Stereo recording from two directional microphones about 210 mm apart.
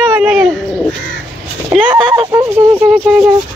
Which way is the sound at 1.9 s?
20° right (ahead or behind).